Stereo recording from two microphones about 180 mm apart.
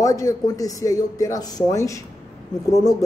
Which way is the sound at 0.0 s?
20° left (ahead or behind).